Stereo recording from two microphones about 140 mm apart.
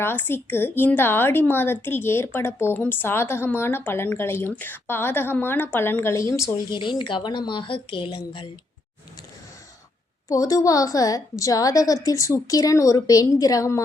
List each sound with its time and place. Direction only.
0.0 s a woman's voice: 15° left (ahead or behind)
6.7 s a woman's voice: 35° left (ahead or behind)
10.2 s a woman's voice: 25° left (ahead or behind)